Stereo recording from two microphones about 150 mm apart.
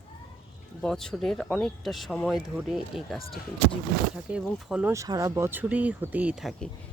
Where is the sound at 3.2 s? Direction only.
40° left (ahead or behind).